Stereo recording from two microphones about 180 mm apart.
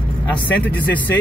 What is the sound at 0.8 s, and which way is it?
Speech, 10° left (ahead or behind).